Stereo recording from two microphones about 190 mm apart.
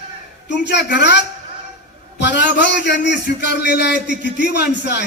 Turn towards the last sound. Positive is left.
turn(degrees=60)  # may be behind; listen again after turning